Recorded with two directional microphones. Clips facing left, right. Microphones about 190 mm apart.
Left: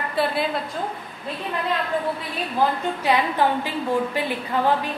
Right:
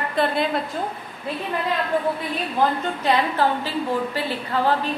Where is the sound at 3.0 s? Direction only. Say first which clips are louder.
Even; 15° left (ahead or behind).